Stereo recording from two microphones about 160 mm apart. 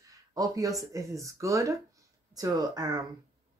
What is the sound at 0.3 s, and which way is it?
Speech, 20° right (ahead or behind).